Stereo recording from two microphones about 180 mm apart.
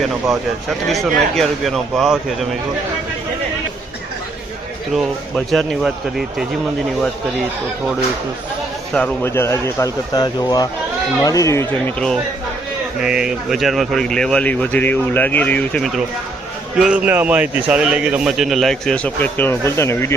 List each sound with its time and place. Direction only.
0.9 s a man's voice: centre (ahead or behind)
5.5 s a man's voice: centre (ahead or behind)
8.9 s speech: 5° left (ahead or behind)
11.9 s a man's voice: 5° left (ahead or behind)